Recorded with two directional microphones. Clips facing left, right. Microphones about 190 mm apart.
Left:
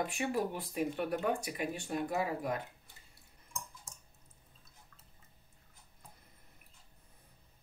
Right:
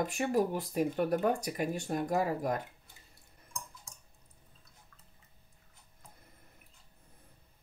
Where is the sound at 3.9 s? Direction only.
Centre (ahead or behind).